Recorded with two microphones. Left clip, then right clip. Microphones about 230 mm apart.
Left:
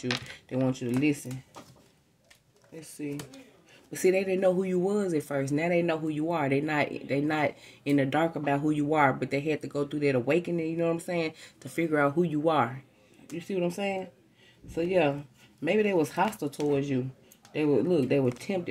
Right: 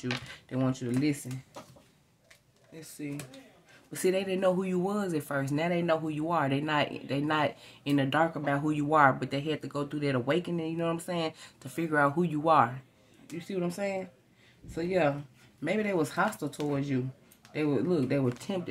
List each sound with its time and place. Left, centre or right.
0.5 s speech: centre
2.7 s speech: centre